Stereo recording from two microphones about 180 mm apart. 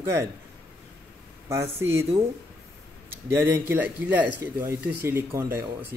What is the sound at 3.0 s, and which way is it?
Speech, 15° right (ahead or behind).